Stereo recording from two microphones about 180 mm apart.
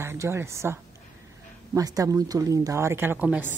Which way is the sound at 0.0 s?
15° right (ahead or behind).